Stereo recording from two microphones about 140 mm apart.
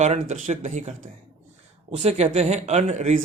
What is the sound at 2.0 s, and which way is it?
Speech, 50° right (ahead or behind).